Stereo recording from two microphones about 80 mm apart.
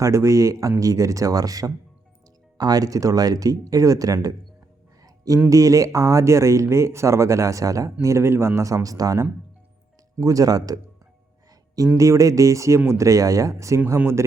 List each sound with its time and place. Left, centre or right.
0.0 s speech: right
5.0 s a sound: right
5.5 s speech: right
11.9 s speech: right